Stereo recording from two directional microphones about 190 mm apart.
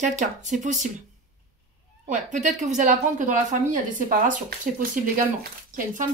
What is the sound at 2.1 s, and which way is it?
A woman's voice, 40° right (ahead or behind).